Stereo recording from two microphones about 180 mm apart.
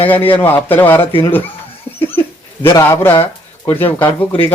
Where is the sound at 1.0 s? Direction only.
30° left (ahead or behind).